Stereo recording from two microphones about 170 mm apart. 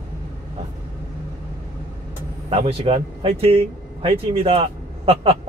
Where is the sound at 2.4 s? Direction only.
35° right (ahead or behind).